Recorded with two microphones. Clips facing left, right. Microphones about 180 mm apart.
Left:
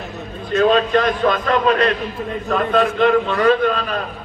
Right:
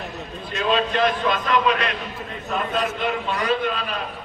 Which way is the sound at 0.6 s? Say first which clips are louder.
Left 5 dB; 45° left (ahead or behind).